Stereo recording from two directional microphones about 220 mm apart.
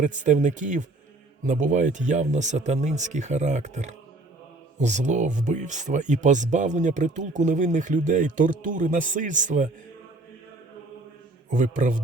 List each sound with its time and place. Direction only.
0.0 s speech: 35° right (ahead or behind)
11.4 s speech: 35° right (ahead or behind)